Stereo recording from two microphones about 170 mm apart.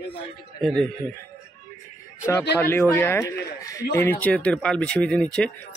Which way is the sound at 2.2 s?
15° left (ahead or behind).